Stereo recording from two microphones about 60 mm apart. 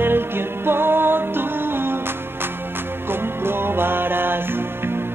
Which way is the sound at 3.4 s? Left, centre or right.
Right.